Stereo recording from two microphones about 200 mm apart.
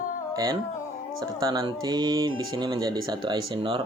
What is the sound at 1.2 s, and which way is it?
Speech, 20° right (ahead or behind).